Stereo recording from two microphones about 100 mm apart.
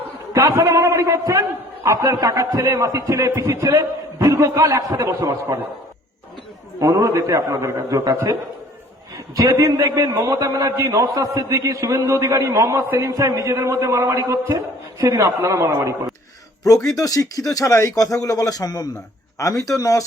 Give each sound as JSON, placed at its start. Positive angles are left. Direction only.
{"t": 0.3, "sound": "a man's voice", "side_deg": -35}
{"t": 6.7, "sound": "a man's voice", "side_deg": -35}
{"t": 16.6, "sound": "speech", "side_deg": 35}